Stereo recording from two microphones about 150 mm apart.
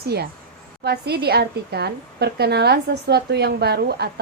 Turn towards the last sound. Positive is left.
turn(degrees=-90)